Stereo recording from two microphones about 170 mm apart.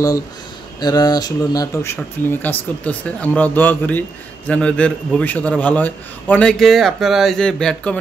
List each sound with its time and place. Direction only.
0.7 s a man's voice: 25° left (ahead or behind); by 8.0 s 5° left (ahead or behind)